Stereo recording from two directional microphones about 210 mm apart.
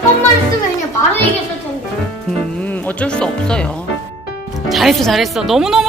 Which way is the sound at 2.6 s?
5° left (ahead or behind).